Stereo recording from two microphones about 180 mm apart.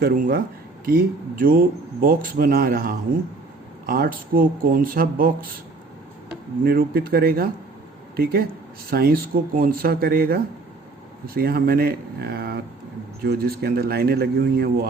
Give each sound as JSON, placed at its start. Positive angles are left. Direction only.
{"t": 0.0, "sound": "speech", "side_deg": -55}
{"t": 6.7, "sound": "speech", "side_deg": -55}